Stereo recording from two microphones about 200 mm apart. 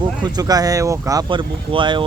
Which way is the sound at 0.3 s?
20° right (ahead or behind).